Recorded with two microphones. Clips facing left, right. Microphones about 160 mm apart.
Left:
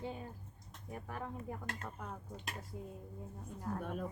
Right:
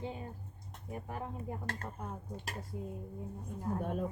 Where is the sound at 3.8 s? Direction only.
35° right (ahead or behind).